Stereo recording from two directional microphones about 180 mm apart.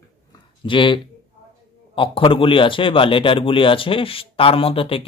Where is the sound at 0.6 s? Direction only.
30° left (ahead or behind).